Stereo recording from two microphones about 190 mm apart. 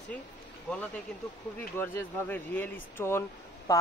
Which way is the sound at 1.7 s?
10° left (ahead or behind).